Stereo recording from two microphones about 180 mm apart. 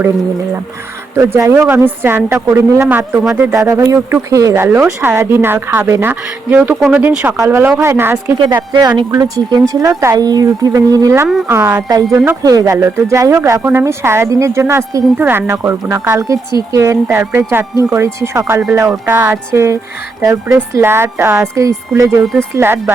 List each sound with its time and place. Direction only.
1.1 s speech: 15° right (ahead or behind)
8.4 s speech: 25° right (ahead or behind); by 12.4 s 10° right (ahead or behind)
12.4 s speech: 20° right (ahead or behind)